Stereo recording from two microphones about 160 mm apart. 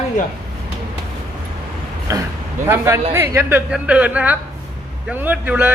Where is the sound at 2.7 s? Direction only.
15° right (ahead or behind).